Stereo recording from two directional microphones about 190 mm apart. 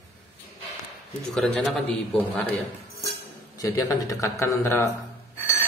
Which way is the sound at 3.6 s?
15° left (ahead or behind).